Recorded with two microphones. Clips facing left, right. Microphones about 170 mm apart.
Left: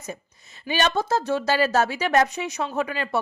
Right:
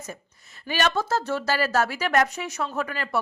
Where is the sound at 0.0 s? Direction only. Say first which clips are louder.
Left 3 dB; 20° left (ahead or behind).